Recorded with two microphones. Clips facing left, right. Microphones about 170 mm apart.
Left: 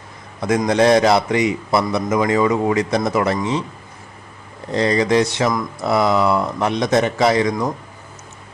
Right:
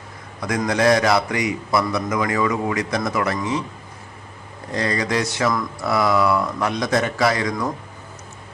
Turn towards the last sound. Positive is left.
turn(degrees=20)  # may be behind; listen again after turning